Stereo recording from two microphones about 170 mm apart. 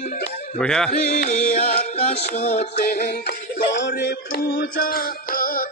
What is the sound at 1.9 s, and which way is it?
Music, 40° left (ahead or behind).